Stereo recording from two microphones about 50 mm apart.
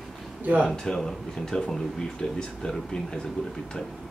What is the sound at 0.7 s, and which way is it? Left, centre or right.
Speech, centre.